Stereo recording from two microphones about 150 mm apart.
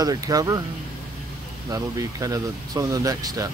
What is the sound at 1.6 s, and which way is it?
Speech, 25° right (ahead or behind).